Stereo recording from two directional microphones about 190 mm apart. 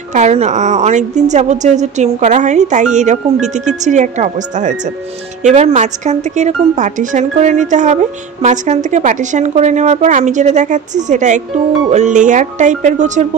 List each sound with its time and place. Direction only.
0.1 s speech: 35° right (ahead or behind)